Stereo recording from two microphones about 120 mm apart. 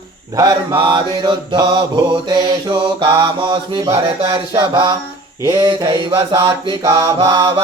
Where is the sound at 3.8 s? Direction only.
30° right (ahead or behind).